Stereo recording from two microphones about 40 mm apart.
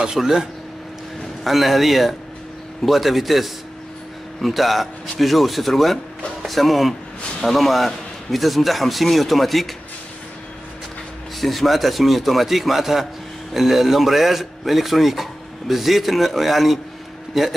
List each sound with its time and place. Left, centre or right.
0.0 s speech: centre
1.4 s a man's voice: centre
11.3 s a man's voice: centre